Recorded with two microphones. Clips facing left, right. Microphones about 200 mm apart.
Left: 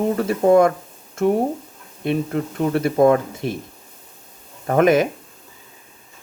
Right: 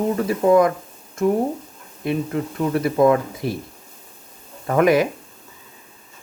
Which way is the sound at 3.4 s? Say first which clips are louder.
Even; 25° left (ahead or behind).